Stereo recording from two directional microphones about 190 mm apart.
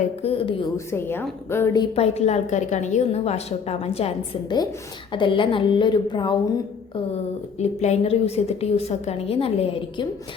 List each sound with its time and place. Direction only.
0.2 s a woman's voice: 30° left (ahead or behind)
0.9 s a woman's voice: 10° left (ahead or behind)
2.0 s a woman's voice: 35° left (ahead or behind)
7.6 s a woman's voice: 35° left (ahead or behind)